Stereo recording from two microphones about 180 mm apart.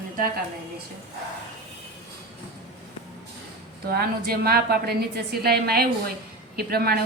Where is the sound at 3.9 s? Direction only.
55° right (ahead or behind).